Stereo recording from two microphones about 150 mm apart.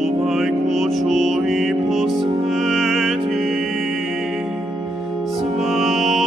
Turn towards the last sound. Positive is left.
turn(degrees=0)  # may be behind; listen again after turning